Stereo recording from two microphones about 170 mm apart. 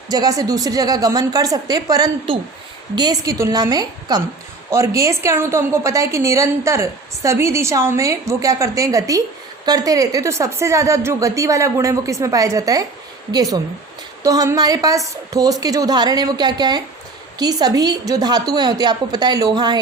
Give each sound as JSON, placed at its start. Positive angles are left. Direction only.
{"t": 0.1, "sound": "a woman's voice", "side_deg": -20}